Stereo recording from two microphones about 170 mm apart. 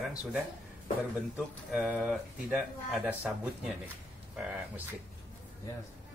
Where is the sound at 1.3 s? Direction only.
5° right (ahead or behind).